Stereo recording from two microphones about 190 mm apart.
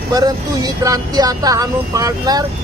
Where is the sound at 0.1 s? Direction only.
20° right (ahead or behind).